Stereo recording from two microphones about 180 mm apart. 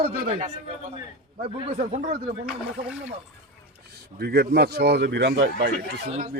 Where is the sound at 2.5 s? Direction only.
5° right (ahead or behind).